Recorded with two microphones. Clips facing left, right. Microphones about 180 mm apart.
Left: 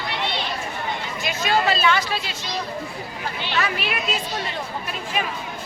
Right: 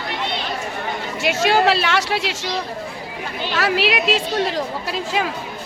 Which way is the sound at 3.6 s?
90° right.